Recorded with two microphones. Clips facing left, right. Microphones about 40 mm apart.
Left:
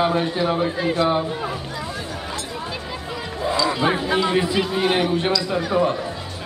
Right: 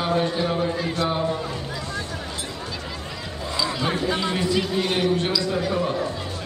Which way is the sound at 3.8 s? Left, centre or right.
Centre.